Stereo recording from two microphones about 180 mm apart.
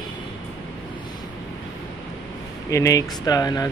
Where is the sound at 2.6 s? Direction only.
15° left (ahead or behind).